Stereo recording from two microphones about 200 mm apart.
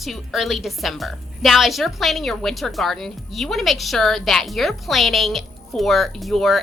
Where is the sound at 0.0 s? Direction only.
Centre (ahead or behind).